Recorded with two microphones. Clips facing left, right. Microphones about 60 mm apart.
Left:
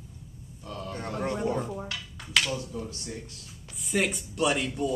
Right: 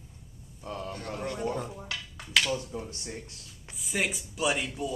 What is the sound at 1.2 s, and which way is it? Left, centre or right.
Speech, left.